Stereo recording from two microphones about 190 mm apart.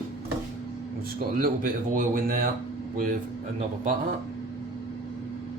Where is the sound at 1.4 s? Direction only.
50° right (ahead or behind).